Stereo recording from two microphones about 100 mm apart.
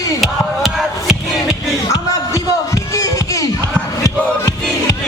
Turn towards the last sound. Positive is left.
turn(degrees=35)  # may be behind; listen again after turning